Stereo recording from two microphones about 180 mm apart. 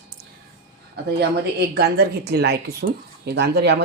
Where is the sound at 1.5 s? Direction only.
60° right (ahead or behind).